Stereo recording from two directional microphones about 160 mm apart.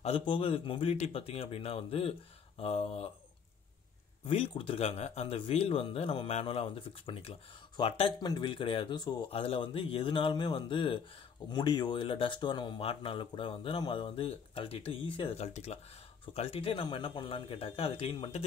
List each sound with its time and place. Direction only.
0.0 s speech: 30° left (ahead or behind)
4.3 s speech: 35° left (ahead or behind)